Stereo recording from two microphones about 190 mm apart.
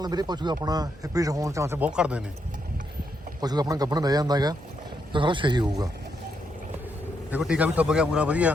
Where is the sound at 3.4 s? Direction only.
20° right (ahead or behind).